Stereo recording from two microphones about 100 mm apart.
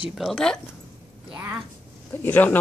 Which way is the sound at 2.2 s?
20° left (ahead or behind).